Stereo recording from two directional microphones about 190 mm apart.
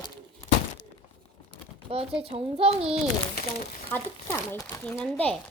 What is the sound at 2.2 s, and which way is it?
Speech, 30° right (ahead or behind).